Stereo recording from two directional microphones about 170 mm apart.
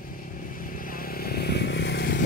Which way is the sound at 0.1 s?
55° left (ahead or behind).